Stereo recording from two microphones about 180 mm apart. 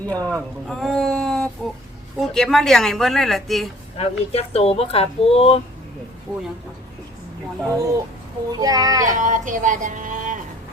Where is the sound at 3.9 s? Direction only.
35° left (ahead or behind).